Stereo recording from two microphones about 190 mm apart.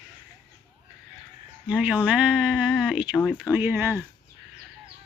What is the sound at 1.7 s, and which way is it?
Speech, 5° right (ahead or behind).